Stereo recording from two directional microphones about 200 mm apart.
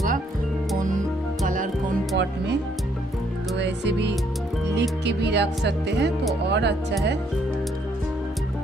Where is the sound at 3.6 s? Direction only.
60° right (ahead or behind).